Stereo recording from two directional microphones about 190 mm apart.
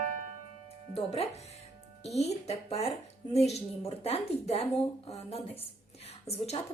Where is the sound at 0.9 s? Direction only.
30° left (ahead or behind).